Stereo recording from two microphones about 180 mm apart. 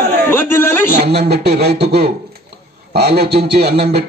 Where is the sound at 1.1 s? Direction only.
65° right (ahead or behind).